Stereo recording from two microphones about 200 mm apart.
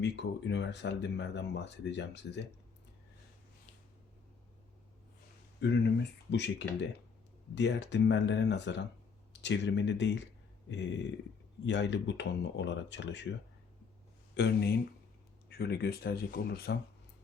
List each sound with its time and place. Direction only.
0.0 s speech: 60° left (ahead or behind)
5.5 s speech: 60° left (ahead or behind)
11.6 s speech: 60° left (ahead or behind)
14.3 s speech: 60° left (ahead or behind)